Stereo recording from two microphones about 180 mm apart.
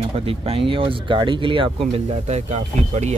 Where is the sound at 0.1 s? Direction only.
30° right (ahead or behind).